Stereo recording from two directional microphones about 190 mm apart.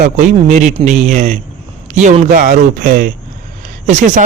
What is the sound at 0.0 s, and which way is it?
Speech, 40° right (ahead or behind).